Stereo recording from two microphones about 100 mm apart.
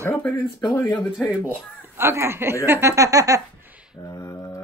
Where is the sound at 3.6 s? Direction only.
10° right (ahead or behind).